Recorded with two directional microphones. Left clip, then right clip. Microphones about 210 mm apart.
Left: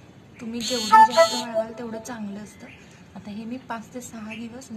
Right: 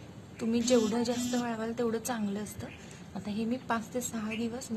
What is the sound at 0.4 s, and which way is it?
A woman's voice, 40° right (ahead or behind).